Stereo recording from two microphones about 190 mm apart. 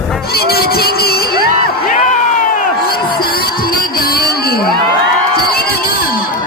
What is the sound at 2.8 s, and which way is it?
Music, 55° left (ahead or behind).